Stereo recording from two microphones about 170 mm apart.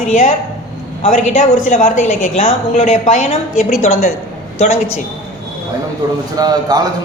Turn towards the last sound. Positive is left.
turn(degrees=-25)  # may be behind; listen again after turning